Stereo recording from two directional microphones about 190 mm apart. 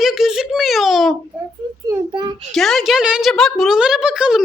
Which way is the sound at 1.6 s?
20° right (ahead or behind).